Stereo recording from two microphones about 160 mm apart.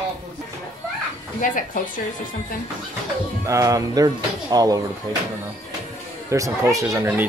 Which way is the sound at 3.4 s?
20° right (ahead or behind).